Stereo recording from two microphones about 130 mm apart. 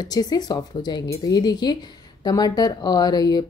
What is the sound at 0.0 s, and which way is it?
A woman's voice, 30° left (ahead or behind).